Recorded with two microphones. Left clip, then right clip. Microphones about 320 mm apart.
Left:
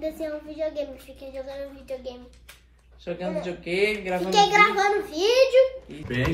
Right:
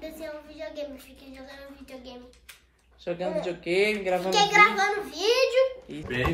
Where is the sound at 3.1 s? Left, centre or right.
Right.